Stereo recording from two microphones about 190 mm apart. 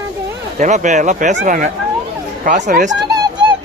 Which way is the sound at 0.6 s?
40° right (ahead or behind).